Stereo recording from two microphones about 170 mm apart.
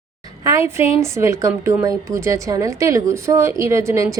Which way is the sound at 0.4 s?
15° right (ahead or behind).